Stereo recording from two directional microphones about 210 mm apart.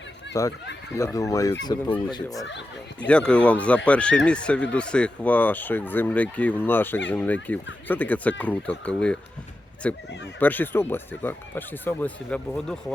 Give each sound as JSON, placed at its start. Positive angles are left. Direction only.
{"t": 0.4, "sound": "speech", "side_deg": 15}
{"t": 2.5, "sound": "speech", "side_deg": 55}
{"t": 3.1, "sound": "a man's voice", "side_deg": 5}